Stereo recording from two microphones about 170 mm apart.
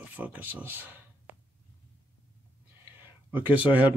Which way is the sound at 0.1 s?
10° right (ahead or behind).